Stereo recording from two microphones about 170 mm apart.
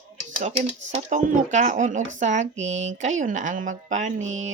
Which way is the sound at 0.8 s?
45° right (ahead or behind).